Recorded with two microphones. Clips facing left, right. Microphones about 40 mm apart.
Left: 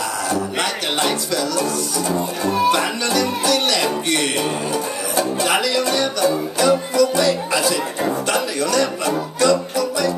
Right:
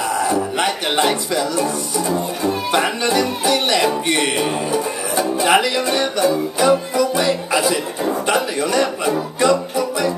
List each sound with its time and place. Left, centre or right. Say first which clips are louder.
0.2 s speech: right 2 dB; right
9.4 s music: even; right